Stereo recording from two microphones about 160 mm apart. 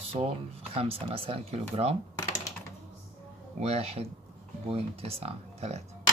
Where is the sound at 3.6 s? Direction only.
40° right (ahead or behind).